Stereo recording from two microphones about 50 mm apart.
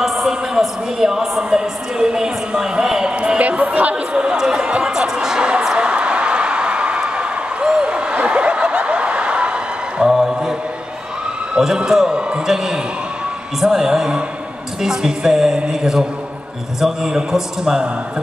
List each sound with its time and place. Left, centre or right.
0.0 s a man's voice: centre
3.2 s music: right
3.9 s a sound: centre
10.0 s mantra: centre
11.5 s a man's voice: centre